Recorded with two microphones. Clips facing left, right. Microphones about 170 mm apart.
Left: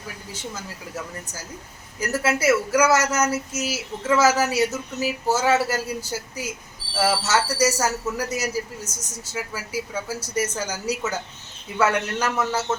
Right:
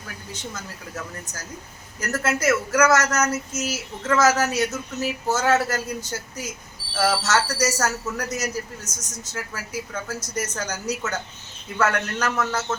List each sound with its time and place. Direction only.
0.5 s speech: 10° left (ahead or behind)